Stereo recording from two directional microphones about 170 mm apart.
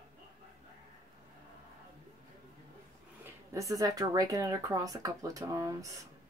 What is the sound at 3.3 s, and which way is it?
A woman's voice, 20° right (ahead or behind).